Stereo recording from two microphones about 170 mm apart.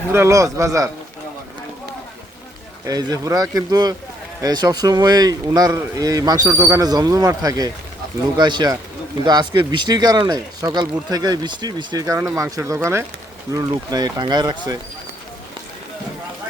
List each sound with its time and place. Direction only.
0.1 s a man's voice: 15° right (ahead or behind)
2.8 s a man's voice: 20° right (ahead or behind)